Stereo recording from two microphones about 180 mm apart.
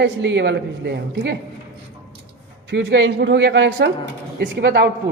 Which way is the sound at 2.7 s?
75° right (ahead or behind).